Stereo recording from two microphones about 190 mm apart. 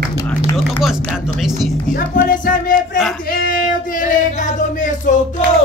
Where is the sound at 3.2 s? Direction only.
50° left (ahead or behind).